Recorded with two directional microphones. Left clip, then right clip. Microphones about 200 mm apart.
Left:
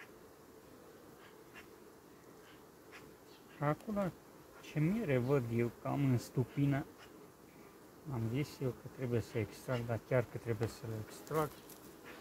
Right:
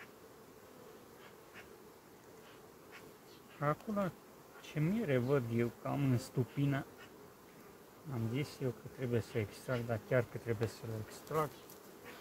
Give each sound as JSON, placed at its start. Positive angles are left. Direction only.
{"t": 3.5, "sound": "speech", "side_deg": 5}
{"t": 8.1, "sound": "speech", "side_deg": 0}
{"t": 11.2, "sound": "speech", "side_deg": 15}